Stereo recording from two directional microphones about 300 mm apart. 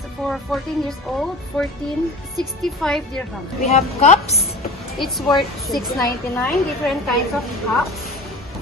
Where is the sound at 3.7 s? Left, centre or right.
Left.